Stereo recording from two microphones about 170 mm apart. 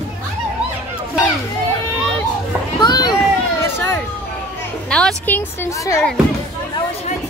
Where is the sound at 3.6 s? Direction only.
15° left (ahead or behind).